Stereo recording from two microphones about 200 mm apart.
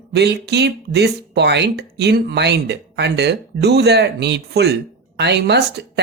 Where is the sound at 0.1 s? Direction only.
55° right (ahead or behind).